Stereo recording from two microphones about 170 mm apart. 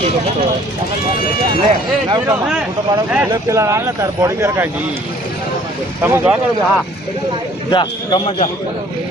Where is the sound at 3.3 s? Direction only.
20° right (ahead or behind).